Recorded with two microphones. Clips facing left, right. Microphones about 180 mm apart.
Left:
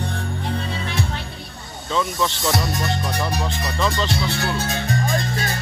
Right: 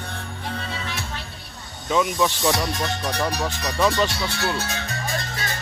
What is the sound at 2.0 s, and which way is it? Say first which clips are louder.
Speech: right 2 dB; 10° right (ahead or behind).